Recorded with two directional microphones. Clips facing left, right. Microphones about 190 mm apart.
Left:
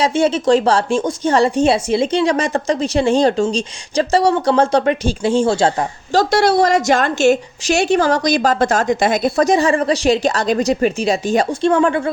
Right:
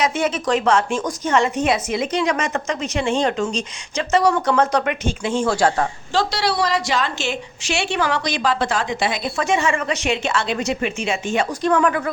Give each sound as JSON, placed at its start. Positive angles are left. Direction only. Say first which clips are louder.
{"t": 0.0, "sound": "a woman's voice", "louder": "left 5 dB", "side_deg": 30}
{"t": 6.1, "sound": "a woman's voice", "louder": "left 7 dB", "side_deg": 45}